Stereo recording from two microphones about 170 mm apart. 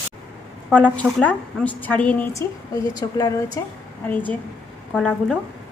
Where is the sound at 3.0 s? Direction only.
20° left (ahead or behind).